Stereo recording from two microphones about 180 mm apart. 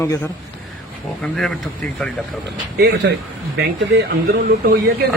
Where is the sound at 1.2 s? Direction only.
Centre (ahead or behind).